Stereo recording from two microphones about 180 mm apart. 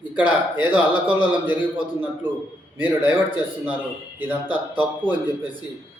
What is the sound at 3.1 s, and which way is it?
A man's voice, 10° right (ahead or behind).